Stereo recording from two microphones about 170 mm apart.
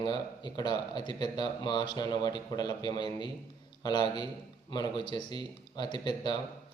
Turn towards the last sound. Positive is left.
turn(degrees=25)  # may be behind; listen again after turning